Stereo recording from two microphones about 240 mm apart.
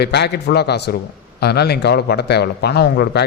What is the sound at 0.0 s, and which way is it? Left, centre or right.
A man's voice, left.